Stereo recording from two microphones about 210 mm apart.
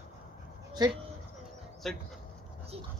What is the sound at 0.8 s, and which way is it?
Speech, 20° right (ahead or behind).